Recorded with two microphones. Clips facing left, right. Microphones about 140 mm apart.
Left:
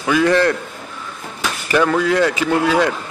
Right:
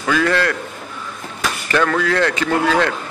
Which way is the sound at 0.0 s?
15° left (ahead or behind).